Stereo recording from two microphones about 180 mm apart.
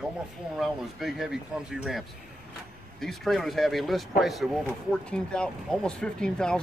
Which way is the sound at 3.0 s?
Centre (ahead or behind).